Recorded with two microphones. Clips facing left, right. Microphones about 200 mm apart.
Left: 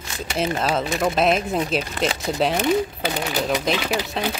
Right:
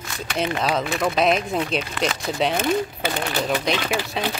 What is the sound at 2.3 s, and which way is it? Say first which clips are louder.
Speech: left 2 dB; centre (ahead or behind).